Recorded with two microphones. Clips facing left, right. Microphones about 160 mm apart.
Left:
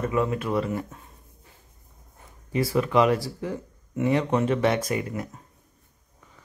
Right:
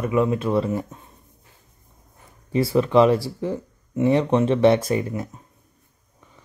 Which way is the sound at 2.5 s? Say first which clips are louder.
Right 4 dB; 30° right (ahead or behind).